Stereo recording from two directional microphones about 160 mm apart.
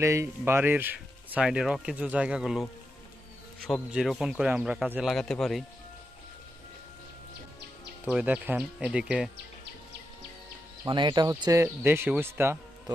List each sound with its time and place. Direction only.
0.0 s a man's voice: 15° right (ahead or behind); by 5.7 s centre (ahead or behind)
8.0 s speech: 5° right (ahead or behind)
10.9 s speech: 30° right (ahead or behind)